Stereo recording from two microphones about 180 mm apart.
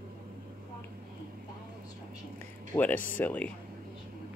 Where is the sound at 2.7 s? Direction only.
15° left (ahead or behind).